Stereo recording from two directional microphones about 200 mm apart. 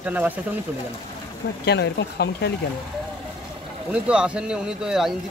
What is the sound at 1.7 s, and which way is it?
Speech, 55° left (ahead or behind).